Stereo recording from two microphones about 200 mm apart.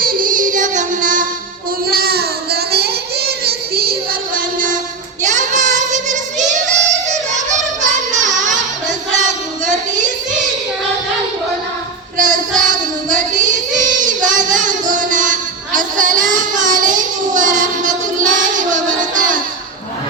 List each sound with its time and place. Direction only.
0.0 s child singing: 45° right (ahead or behind)
1.9 s child singing: 50° right (ahead or behind)
5.2 s child singing: 40° right (ahead or behind)
7.8 s child singing: 40° right (ahead or behind)
12.1 s child singing: 40° right (ahead or behind)